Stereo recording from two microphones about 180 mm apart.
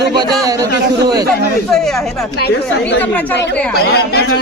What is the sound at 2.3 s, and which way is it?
Speech, 65° left (ahead or behind).